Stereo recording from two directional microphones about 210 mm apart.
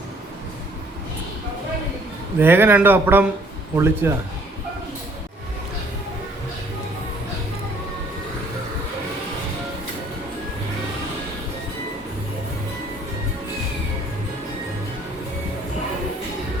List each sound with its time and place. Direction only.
2.4 s speech: 10° right (ahead or behind)